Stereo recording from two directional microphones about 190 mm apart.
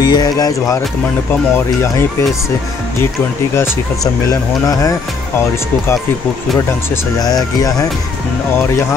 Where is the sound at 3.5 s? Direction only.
15° left (ahead or behind).